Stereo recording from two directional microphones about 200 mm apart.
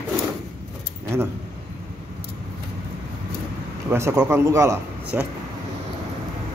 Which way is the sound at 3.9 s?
15° right (ahead or behind).